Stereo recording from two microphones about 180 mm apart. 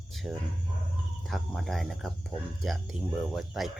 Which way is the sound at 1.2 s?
Centre (ahead or behind).